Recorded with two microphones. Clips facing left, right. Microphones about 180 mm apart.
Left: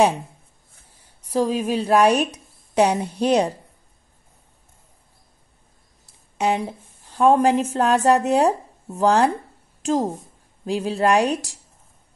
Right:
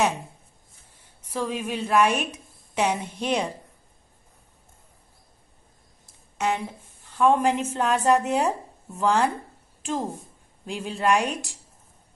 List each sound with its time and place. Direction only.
1.2 s a woman's voice: 35° left (ahead or behind)
6.3 s speech: 35° left (ahead or behind)
10.6 s speech: 40° left (ahead or behind)